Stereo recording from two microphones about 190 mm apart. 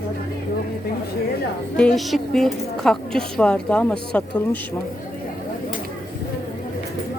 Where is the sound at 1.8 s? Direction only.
Centre (ahead or behind).